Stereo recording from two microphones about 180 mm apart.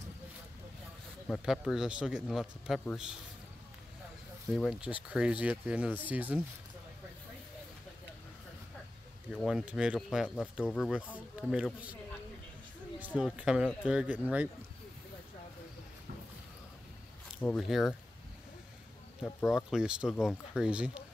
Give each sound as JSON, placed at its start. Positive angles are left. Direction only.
{"t": 1.2, "sound": "a man's voice", "side_deg": 0}
{"t": 4.5, "sound": "a man's voice", "side_deg": 0}
{"t": 9.3, "sound": "a man's voice", "side_deg": -5}
{"t": 13.0, "sound": "a man's voice", "side_deg": -5}
{"t": 17.4, "sound": "a man's voice", "side_deg": 10}
{"t": 19.2, "sound": "a man's voice", "side_deg": 0}